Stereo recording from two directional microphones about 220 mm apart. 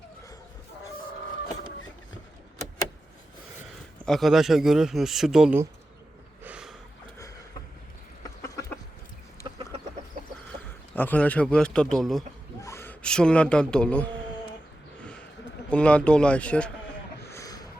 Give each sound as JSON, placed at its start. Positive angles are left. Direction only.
{"t": 4.0, "sound": "a man's voice", "side_deg": 0}
{"t": 6.4, "sound": "snort", "side_deg": -5}
{"t": 8.4, "sound": "a sound", "side_deg": 15}
{"t": 10.9, "sound": "a man's voice", "side_deg": 5}
{"t": 12.6, "sound": "speech", "side_deg": 10}
{"t": 15.7, "sound": "a man's voice", "side_deg": 5}
{"t": 17.2, "sound": "a sound", "side_deg": 15}